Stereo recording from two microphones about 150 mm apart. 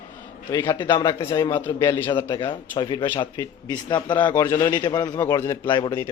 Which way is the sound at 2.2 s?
30° left (ahead or behind).